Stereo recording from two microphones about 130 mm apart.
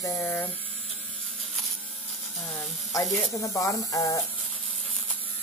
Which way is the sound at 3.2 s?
25° left (ahead or behind).